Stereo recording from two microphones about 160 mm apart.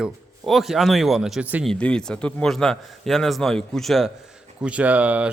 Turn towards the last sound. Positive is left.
turn(degrees=-10)  # may be behind; listen again after turning